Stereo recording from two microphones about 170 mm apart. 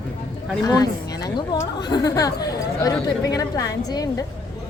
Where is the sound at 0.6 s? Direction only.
20° left (ahead or behind).